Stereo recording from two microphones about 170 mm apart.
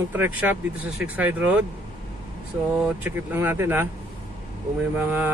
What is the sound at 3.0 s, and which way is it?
Speech, 15° right (ahead or behind).